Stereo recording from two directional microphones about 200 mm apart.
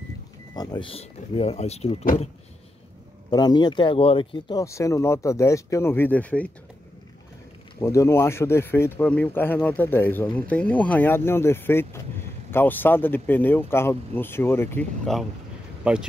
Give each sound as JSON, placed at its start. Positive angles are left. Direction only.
{"t": 0.6, "sound": "speech", "side_deg": 20}
{"t": 3.3, "sound": "speech", "side_deg": 20}
{"t": 7.8, "sound": "speech", "side_deg": 15}